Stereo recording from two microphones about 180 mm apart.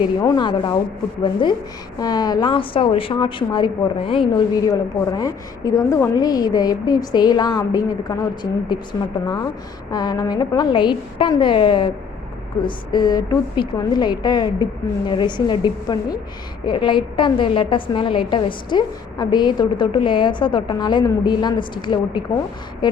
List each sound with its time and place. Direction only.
0.2 s a woman's voice: 20° left (ahead or behind)